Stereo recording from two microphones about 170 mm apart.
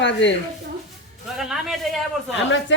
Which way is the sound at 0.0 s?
90° left.